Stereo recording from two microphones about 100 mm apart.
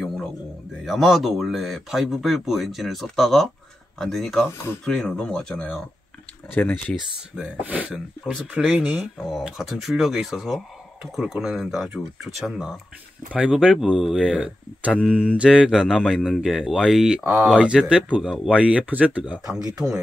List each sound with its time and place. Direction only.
0.8 s speech: centre (ahead or behind)
6.5 s speech: 20° left (ahead or behind)
7.3 s speech: 15° right (ahead or behind)
17.2 s speech: 20° right (ahead or behind)
17.5 s speech: 5° right (ahead or behind)